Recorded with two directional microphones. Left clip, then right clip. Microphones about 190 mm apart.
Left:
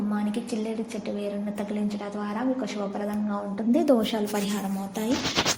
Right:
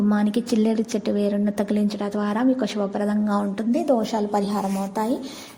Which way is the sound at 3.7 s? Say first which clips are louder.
Even; 10° left (ahead or behind).